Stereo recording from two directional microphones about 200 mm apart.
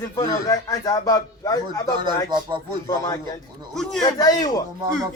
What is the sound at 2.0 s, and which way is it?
Speech, 20° right (ahead or behind).